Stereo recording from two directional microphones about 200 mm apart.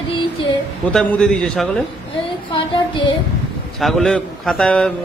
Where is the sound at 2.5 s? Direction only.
25° left (ahead or behind).